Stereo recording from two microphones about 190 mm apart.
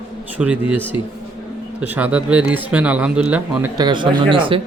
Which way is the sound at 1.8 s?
10° right (ahead or behind).